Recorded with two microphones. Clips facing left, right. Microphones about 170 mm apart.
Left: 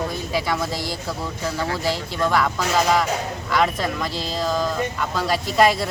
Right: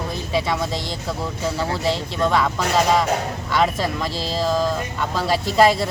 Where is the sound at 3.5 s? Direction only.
Centre (ahead or behind).